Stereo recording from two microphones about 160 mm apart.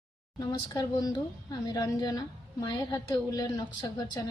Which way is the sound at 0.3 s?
25° left (ahead or behind).